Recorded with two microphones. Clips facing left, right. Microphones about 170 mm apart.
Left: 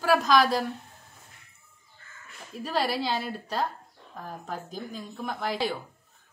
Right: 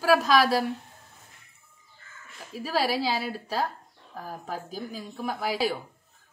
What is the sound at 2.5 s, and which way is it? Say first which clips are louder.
A woman's voice: right 1 dB; 5° right (ahead or behind).